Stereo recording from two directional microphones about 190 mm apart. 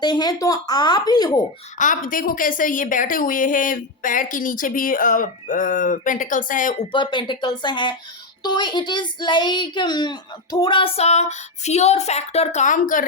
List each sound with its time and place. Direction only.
0.0 s speech: 20° left (ahead or behind)
1.8 s a woman's voice: 45° left (ahead or behind)
6.9 s speech: 25° left (ahead or behind); by 13.1 s 45° left (ahead or behind)